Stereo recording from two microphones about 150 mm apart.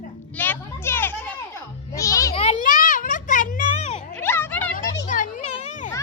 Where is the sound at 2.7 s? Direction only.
65° left (ahead or behind).